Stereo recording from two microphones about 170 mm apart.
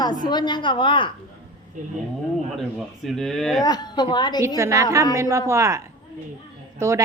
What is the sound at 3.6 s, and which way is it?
Speech, 25° left (ahead or behind).